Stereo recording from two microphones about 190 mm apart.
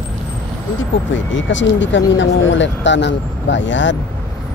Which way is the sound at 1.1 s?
75° left (ahead or behind).